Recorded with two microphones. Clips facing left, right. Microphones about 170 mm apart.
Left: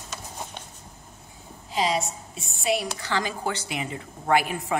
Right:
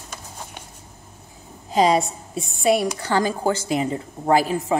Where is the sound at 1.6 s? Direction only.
45° right (ahead or behind).